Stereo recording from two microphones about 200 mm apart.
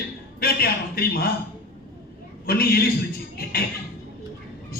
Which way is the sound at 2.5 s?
50° left (ahead or behind).